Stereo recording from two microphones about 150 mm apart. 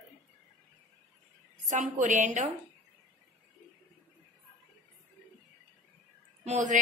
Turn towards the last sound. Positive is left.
turn(degrees=-55)  # may be behind; listen again after turning